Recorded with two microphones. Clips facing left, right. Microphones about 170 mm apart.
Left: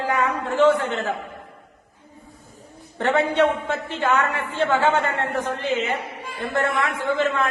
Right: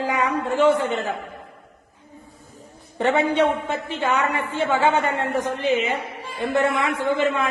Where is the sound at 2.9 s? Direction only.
15° right (ahead or behind).